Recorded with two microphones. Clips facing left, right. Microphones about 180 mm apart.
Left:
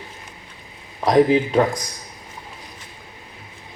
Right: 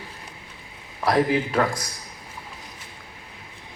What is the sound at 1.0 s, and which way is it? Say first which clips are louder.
Speech: left 6 dB; 20° left (ahead or behind).